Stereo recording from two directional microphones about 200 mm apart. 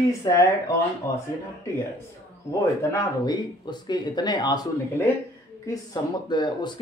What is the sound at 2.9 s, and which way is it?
Speech, 20° left (ahead or behind).